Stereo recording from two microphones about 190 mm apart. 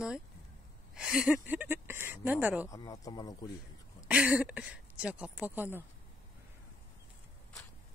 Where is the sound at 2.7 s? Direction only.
20° left (ahead or behind).